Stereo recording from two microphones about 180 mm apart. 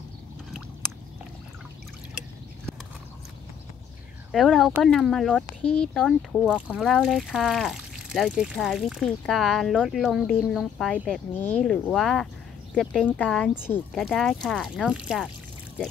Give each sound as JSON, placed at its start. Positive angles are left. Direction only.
{"t": 4.3, "sound": "speech", "side_deg": 0}